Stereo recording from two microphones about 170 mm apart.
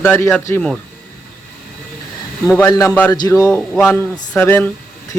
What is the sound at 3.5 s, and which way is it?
Speech, 5° left (ahead or behind).